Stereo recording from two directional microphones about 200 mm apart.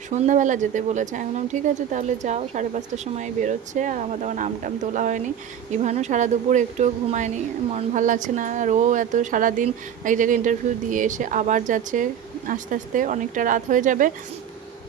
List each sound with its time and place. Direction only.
0.1 s speech: 35° right (ahead or behind)